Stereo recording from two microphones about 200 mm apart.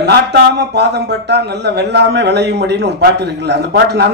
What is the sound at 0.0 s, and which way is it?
A man's voice, 55° right (ahead or behind).